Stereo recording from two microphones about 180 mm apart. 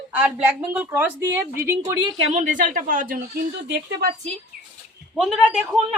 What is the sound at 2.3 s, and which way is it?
Speech, 45° right (ahead or behind).